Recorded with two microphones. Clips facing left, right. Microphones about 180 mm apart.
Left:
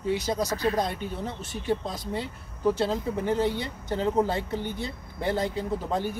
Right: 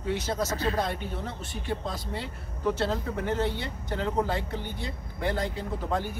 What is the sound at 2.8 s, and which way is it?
Speech, 15° left (ahead or behind).